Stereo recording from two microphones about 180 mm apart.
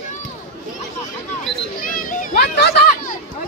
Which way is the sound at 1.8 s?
50° left (ahead or behind).